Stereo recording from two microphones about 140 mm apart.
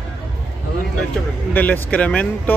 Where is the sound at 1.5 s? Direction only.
10° left (ahead or behind).